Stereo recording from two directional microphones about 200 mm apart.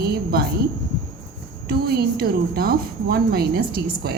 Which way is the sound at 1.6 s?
50° right (ahead or behind).